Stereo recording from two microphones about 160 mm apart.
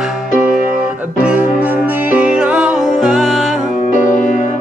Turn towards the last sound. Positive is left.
turn(degrees=0)  # may be behind; listen again after turning